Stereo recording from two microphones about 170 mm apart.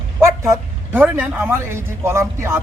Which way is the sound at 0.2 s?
15° right (ahead or behind).